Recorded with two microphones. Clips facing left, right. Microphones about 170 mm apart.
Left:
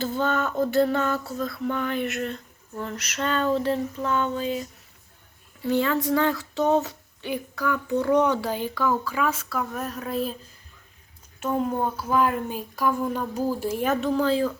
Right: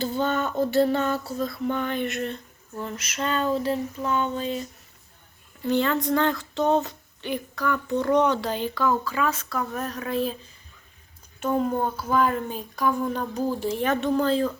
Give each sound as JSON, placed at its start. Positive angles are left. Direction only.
{"t": 0.1, "sound": "speech", "side_deg": 0}
{"t": 5.6, "sound": "speech", "side_deg": 5}
{"t": 11.3, "sound": "speech", "side_deg": 5}